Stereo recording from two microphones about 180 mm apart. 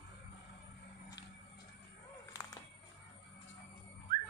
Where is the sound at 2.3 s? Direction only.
20° left (ahead or behind).